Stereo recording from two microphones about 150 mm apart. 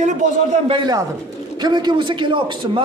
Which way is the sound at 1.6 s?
30° right (ahead or behind).